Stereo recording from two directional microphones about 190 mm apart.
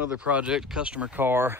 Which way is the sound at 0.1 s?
5° right (ahead or behind).